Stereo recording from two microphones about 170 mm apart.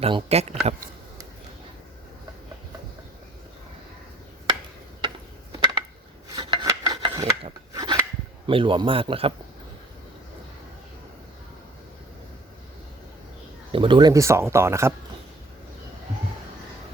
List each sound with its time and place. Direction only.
0.0 s a man's voice: 35° right (ahead or behind)
4.9 s a sound: 25° right (ahead or behind)
6.3 s filing: 30° right (ahead or behind)
6.9 s rub: 30° right (ahead or behind)
7.7 s filing: 20° right (ahead or behind)
8.4 s a man's voice: 30° right (ahead or behind)
13.7 s speech: 30° right (ahead or behind)